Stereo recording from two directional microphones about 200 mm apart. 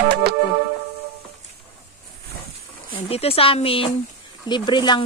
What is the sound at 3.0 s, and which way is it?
Speech, 30° left (ahead or behind).